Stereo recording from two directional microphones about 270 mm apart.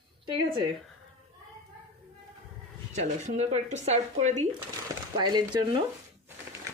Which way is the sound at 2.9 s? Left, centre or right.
Right.